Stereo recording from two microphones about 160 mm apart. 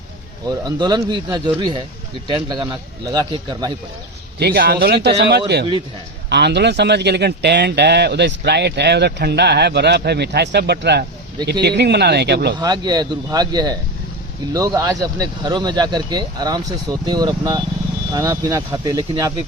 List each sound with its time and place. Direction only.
0.4 s speech: 25° right (ahead or behind)
4.4 s a man's voice: 75° right (ahead or behind)
12.5 s speech: 25° right (ahead or behind)